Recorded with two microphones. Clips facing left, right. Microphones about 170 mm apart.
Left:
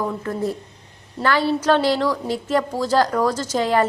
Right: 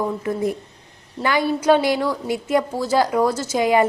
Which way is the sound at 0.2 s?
10° right (ahead or behind).